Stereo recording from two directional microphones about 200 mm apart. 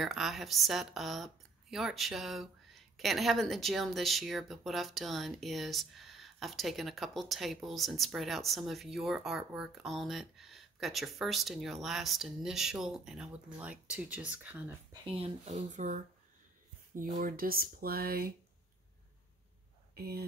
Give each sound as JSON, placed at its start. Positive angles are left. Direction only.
{"t": 0.0, "sound": "speech", "side_deg": 0}
{"t": 14.9, "sound": "speech", "side_deg": -30}
{"t": 20.0, "sound": "speech", "side_deg": -50}